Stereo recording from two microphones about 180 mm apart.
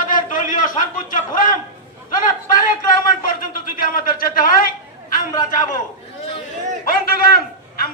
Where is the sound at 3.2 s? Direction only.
50° left (ahead or behind).